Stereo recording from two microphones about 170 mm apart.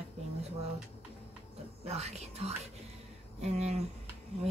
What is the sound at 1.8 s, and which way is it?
Speech, 40° right (ahead or behind).